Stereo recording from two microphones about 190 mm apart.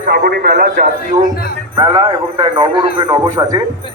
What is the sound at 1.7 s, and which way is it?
Speech, 25° right (ahead or behind).